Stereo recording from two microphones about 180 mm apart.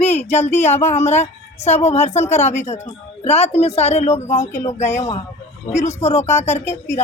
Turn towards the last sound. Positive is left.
turn(degrees=40)  # may be behind; listen again after turning